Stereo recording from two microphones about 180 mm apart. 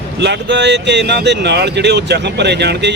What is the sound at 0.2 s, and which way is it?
Speech, 75° right (ahead or behind).